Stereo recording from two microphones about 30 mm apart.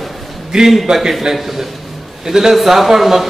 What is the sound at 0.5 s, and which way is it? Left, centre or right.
Speech, right.